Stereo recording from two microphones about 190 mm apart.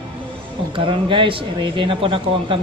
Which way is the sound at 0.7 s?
25° right (ahead or behind).